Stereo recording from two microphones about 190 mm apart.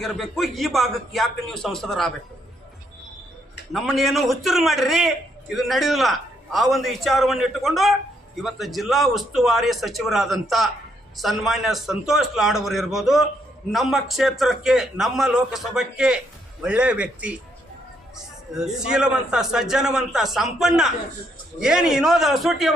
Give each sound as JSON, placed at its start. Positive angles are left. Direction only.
{"t": 0.0, "sound": "a man's voice", "side_deg": 0}
{"t": 3.7, "sound": "a man's voice", "side_deg": 0}
{"t": 18.5, "sound": "a man's voice", "side_deg": -5}